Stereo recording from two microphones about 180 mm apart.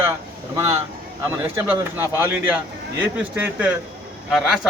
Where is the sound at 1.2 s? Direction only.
10° right (ahead or behind).